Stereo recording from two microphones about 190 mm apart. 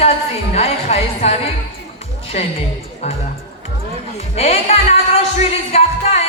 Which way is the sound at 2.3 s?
35° left (ahead or behind).